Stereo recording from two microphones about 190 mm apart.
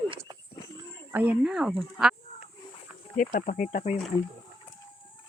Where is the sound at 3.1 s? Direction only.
45° left (ahead or behind).